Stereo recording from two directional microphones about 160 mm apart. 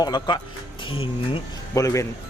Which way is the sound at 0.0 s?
25° left (ahead or behind).